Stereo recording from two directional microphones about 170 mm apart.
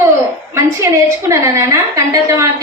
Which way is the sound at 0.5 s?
15° right (ahead or behind).